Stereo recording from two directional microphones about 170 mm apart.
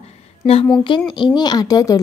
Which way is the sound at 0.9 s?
30° left (ahead or behind).